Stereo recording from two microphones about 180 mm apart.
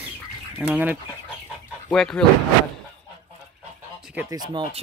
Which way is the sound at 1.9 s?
5° left (ahead or behind).